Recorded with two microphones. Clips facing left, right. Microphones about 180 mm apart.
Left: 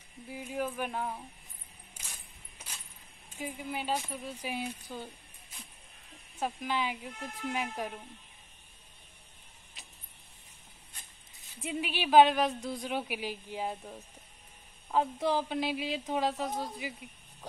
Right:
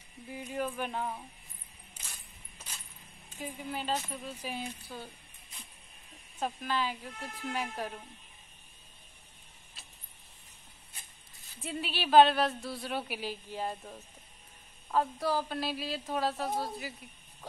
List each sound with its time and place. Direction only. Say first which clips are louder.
0.3 s a woman's voice: even; 10° left (ahead or behind)
3.3 s a woman's voice: left 1 dB; 10° left (ahead or behind)
6.4 s a woman's voice: even; 15° left (ahead or behind)
9.8 s a sound: left 1 dB; 15° left (ahead or behind)
11.6 s a woman's voice: left 2 dB; 15° left (ahead or behind)
14.9 s a woman's voice: left 1 dB; 20° left (ahead or behind)